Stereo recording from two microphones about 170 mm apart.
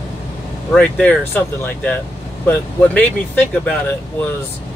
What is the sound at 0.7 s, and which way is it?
Speech, 10° left (ahead or behind).